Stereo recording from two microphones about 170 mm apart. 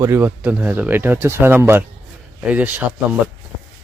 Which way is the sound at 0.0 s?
15° right (ahead or behind).